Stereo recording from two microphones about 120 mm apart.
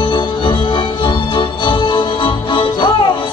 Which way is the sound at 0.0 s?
40° left (ahead or behind).